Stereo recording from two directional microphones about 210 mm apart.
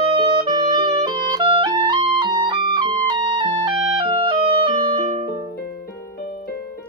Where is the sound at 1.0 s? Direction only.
20° right (ahead or behind).